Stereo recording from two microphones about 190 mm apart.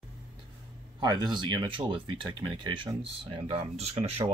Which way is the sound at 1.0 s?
20° right (ahead or behind).